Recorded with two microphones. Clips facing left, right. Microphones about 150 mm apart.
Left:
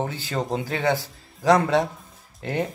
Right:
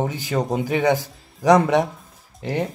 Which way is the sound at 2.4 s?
5° right (ahead or behind).